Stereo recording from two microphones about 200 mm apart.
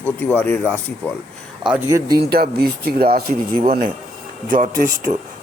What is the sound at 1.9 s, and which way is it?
Speech, 20° right (ahead or behind).